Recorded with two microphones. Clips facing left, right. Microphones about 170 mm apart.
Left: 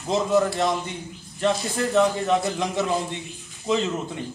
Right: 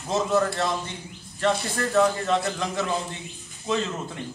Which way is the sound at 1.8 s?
15° left (ahead or behind).